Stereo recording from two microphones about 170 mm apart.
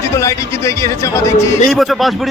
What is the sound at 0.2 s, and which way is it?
Speech, 15° left (ahead or behind).